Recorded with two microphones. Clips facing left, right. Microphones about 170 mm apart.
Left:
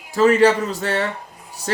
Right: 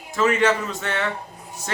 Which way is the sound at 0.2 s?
35° left (ahead or behind).